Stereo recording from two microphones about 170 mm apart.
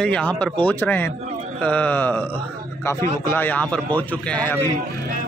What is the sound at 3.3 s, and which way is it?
A man's voice, 10° left (ahead or behind).